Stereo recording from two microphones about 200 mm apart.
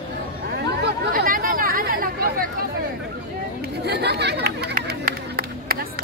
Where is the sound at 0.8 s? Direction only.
45° right (ahead or behind).